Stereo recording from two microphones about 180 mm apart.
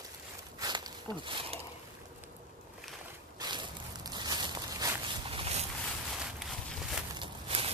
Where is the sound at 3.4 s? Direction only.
25° right (ahead or behind).